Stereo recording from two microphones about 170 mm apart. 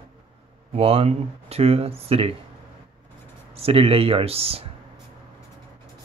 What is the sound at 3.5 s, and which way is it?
Speech, 35° right (ahead or behind).